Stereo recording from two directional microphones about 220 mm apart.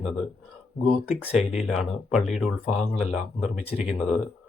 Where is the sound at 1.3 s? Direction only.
30° left (ahead or behind).